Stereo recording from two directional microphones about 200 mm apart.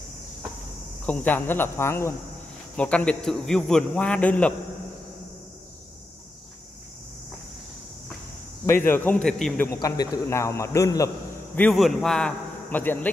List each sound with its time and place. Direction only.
1.0 s a man's voice: 10° left (ahead or behind)
8.6 s a man's voice: 10° left (ahead or behind)
9.7 s a man's voice: 15° left (ahead or behind)
11.5 s a man's voice: 5° left (ahead or behind)